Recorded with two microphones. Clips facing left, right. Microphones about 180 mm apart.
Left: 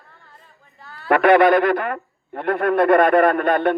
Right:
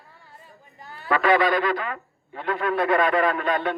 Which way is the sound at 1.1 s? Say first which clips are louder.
Left 7 dB; 60° left (ahead or behind).